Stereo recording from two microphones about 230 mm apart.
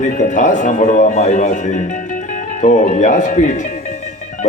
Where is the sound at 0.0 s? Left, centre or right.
Left.